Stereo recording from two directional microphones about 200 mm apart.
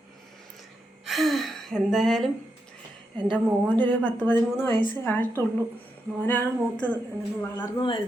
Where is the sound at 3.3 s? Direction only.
5° left (ahead or behind).